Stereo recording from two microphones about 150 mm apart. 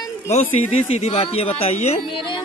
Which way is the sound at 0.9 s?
45° left (ahead or behind).